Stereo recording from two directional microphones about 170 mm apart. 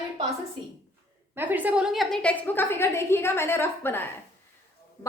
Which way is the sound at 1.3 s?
10° right (ahead or behind).